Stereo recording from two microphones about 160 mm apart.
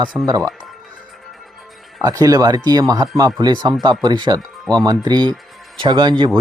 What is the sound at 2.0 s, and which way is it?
Speech, 20° right (ahead or behind).